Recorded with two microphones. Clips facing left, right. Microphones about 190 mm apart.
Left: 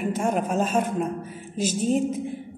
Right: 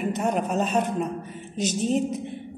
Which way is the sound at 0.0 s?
5° left (ahead or behind).